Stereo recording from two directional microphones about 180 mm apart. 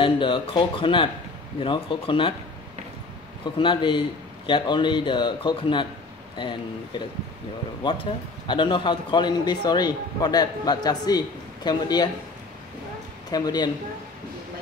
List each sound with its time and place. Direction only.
0.0 s a man's voice: 30° left (ahead or behind)
3.5 s a man's voice: 30° left (ahead or behind)
13.3 s a man's voice: 25° left (ahead or behind)